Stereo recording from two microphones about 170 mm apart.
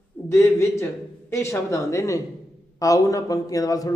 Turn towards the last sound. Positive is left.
turn(degrees=20)  # may be behind; listen again after turning